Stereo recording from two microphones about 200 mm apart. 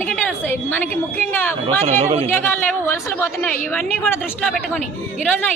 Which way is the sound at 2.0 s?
35° right (ahead or behind).